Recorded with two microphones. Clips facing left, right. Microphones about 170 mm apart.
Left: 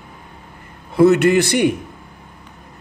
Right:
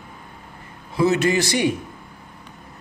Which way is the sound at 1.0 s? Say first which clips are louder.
Left 7 dB; 60° left (ahead or behind).